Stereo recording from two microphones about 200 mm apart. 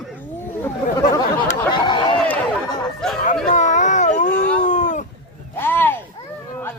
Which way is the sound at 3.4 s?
40° left (ahead or behind).